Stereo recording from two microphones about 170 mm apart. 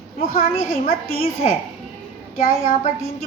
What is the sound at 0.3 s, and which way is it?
Speech, 55° left (ahead or behind).